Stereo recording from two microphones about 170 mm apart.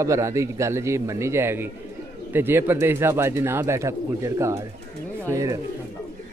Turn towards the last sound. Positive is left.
turn(degrees=-20)  # may be behind; listen again after turning